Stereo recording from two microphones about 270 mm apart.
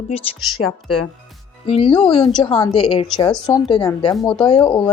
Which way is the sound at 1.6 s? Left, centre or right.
Centre.